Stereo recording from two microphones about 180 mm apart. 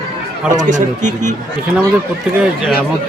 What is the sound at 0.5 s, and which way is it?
Speech, 45° right (ahead or behind).